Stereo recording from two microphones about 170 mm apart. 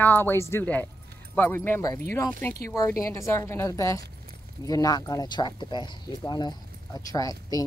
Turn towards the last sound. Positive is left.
turn(degrees=20)  # may be behind; listen again after turning